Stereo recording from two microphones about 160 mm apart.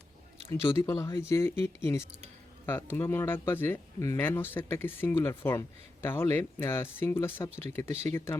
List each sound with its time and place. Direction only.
0.6 s speech: 15° left (ahead or behind)